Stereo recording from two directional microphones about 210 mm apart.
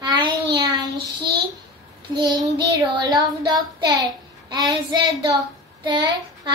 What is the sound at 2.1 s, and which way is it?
Child singing, 20° right (ahead or behind).